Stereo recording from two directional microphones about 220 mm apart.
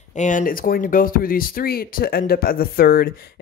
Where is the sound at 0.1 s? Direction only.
35° left (ahead or behind).